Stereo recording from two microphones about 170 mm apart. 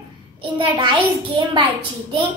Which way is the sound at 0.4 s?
30° right (ahead or behind).